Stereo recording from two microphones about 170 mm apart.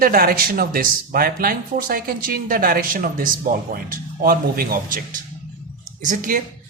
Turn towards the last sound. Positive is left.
turn(degrees=-50)  # may be behind; listen again after turning